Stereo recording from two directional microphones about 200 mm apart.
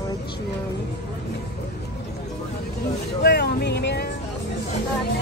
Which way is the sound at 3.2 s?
55° left (ahead or behind).